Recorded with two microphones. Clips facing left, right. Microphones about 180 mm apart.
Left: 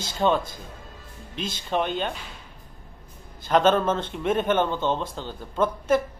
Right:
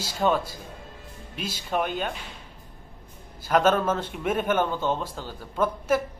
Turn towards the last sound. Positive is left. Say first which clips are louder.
# left 2 dB
turn(degrees=-5)  # may be behind; listen again after turning